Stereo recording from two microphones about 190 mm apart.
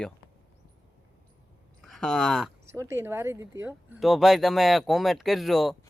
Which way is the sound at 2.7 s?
15° right (ahead or behind).